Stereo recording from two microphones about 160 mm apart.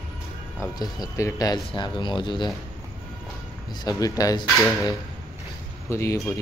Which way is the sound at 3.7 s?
25° left (ahead or behind).